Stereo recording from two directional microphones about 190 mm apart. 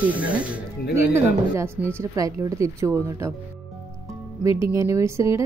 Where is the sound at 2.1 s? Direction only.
15° right (ahead or behind).